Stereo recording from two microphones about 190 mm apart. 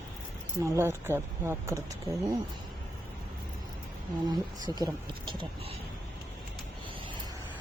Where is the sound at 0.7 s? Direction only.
15° right (ahead or behind).